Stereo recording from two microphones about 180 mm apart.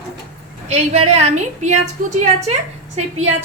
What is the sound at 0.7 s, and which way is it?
A woman's voice, 35° right (ahead or behind).